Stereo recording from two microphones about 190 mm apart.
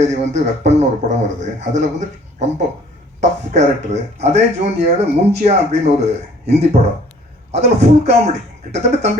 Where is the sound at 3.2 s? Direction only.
35° right (ahead or behind).